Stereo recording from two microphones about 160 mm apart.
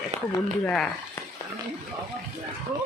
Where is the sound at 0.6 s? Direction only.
10° left (ahead or behind).